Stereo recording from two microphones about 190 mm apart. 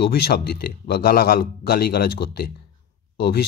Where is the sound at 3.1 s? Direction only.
60° left (ahead or behind).